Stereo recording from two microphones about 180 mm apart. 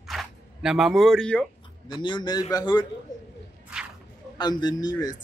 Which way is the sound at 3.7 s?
5° right (ahead or behind).